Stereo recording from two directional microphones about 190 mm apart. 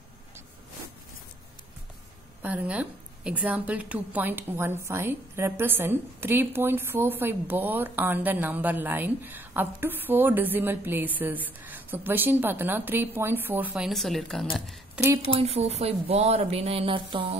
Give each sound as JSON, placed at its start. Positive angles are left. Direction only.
{"t": 2.4, "sound": "a woman's voice", "side_deg": -5}
{"t": 15.2, "sound": "speech", "side_deg": -35}